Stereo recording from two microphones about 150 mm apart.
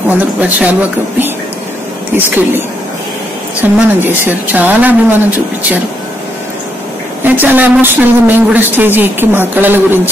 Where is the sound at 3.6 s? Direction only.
15° right (ahead or behind).